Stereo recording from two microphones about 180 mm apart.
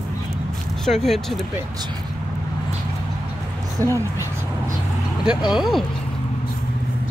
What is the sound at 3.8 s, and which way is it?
Speech, 15° right (ahead or behind).